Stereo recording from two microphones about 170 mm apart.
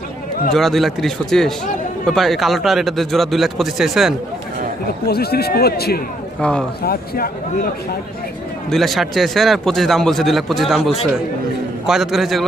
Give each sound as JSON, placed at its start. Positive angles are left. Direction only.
{"t": 0.5, "sound": "speech", "side_deg": 0}
{"t": 5.0, "sound": "a man's voice", "side_deg": 65}
{"t": 8.6, "sound": "speech", "side_deg": 0}